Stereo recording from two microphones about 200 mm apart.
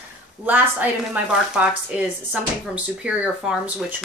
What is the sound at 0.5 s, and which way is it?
Speech, 10° right (ahead or behind).